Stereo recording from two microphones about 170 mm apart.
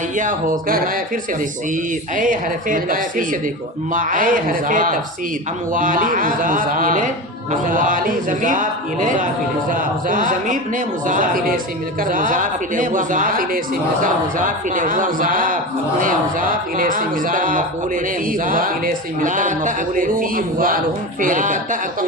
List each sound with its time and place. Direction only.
0.2 s a man's voice: 50° right (ahead or behind)